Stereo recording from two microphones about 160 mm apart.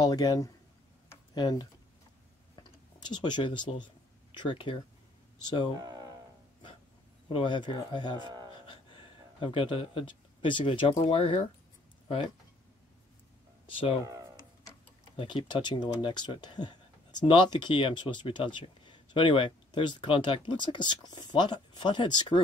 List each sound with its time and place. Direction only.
0.0 s speech: 25° left (ahead or behind)
1.0 s a sound: 25° left (ahead or behind)
3.0 s speech: 30° left (ahead or behind)
5.8 s speech: 25° right (ahead or behind)
7.2 s speech: 30° left (ahead or behind)
8.2 s speech: 25° right (ahead or behind)
8.6 s speech: 30° left (ahead or behind)
13.7 s speech: 35° left (ahead or behind)
14.0 s speech: 20° right (ahead or behind)
15.1 s speech: 30° left (ahead or behind)